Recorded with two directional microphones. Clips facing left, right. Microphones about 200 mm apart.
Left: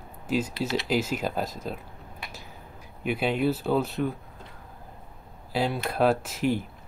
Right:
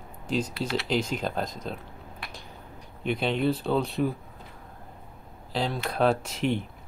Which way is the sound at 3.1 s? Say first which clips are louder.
Even; 5° left (ahead or behind).